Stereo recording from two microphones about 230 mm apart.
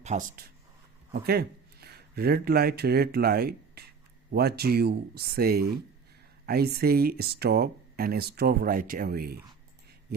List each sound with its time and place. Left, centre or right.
0.0 s speech: right
1.1 s speech: right